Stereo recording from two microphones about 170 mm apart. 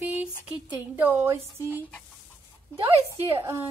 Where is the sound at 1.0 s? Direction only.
10° right (ahead or behind).